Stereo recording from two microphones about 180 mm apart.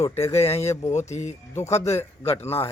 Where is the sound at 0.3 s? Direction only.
35° left (ahead or behind).